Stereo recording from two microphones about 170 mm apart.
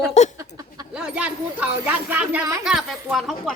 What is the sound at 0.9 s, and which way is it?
Speech, 5° right (ahead or behind).